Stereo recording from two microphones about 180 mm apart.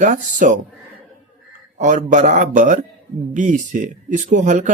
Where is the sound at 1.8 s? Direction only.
45° right (ahead or behind).